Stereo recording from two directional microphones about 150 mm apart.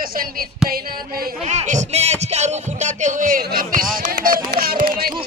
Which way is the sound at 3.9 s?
80° right.